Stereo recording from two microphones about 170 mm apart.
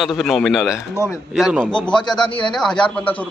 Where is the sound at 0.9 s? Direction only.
15° left (ahead or behind).